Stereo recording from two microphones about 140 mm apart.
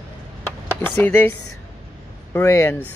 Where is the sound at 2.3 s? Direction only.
20° left (ahead or behind).